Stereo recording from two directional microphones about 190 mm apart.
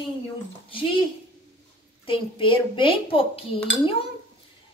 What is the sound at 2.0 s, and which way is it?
A woman's voice, 30° left (ahead or behind).